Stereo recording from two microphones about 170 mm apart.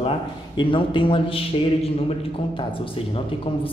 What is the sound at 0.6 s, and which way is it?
A man's voice, 30° left (ahead or behind).